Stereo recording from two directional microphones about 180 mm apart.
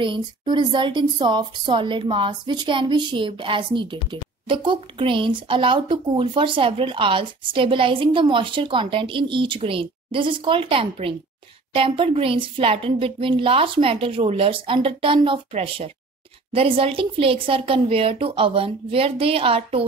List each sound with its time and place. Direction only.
0.0 s a woman's voice: 25° right (ahead or behind)